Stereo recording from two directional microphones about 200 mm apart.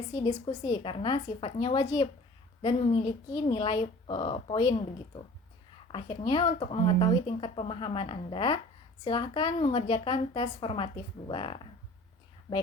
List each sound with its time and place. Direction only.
0.2 s a woman's voice: 25° left (ahead or behind)
5.9 s a woman's voice: 25° left (ahead or behind)